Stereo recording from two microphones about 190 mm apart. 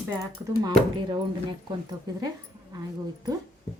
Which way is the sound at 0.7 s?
25° right (ahead or behind).